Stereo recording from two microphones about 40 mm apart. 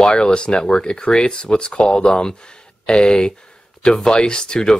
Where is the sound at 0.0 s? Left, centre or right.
Left.